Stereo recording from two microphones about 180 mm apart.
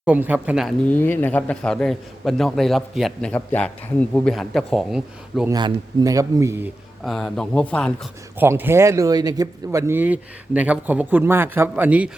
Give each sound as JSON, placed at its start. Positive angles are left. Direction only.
{"t": 0.0, "sound": "speech", "side_deg": -10}
{"t": 0.9, "sound": "a man's voice", "side_deg": 10}
{"t": 5.5, "sound": "a man's voice", "side_deg": -20}
{"t": 7.0, "sound": "a man's voice", "side_deg": 0}
{"t": 8.4, "sound": "speech", "side_deg": -10}